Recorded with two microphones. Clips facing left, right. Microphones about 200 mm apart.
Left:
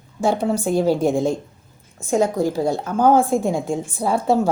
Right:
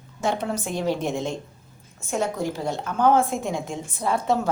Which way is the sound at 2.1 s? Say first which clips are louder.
Left 7 dB; 35° left (ahead or behind).